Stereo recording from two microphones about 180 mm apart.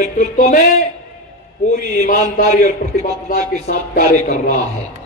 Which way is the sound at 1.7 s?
45° left (ahead or behind).